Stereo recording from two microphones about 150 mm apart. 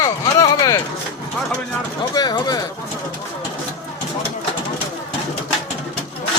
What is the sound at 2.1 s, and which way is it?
Speech, 30° left (ahead or behind).